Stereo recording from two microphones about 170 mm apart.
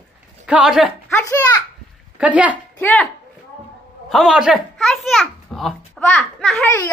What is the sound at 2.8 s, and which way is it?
Speech, 5° left (ahead or behind).